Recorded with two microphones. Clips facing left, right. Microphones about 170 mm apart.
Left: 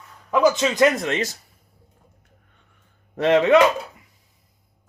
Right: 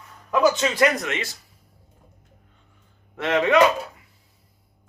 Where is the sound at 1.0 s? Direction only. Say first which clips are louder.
Left 5 dB; 35° left (ahead or behind).